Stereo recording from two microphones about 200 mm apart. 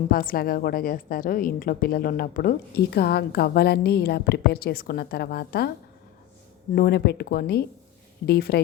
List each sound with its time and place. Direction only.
0.1 s a woman's voice: 45° left (ahead or behind)
6.7 s a woman's voice: 50° left (ahead or behind)